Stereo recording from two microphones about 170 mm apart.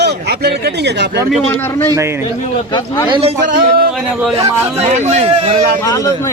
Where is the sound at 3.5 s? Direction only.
55° right (ahead or behind).